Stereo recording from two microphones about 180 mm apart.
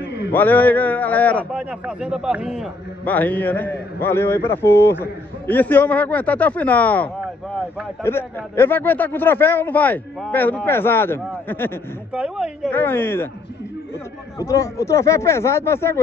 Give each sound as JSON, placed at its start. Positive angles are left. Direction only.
{"t": 0.3, "sound": "a man's voice", "side_deg": 10}
{"t": 1.5, "sound": "speech", "side_deg": -5}
{"t": 3.1, "sound": "speech", "side_deg": 10}
{"t": 12.1, "sound": "a woman's voice", "side_deg": -5}
{"t": 12.6, "sound": "speech", "side_deg": 10}
{"t": 14.4, "sound": "speech", "side_deg": 15}